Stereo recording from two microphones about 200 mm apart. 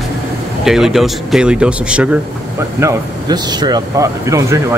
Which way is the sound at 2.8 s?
20° right (ahead or behind).